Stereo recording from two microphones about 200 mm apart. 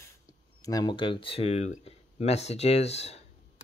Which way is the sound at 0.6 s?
20° left (ahead or behind).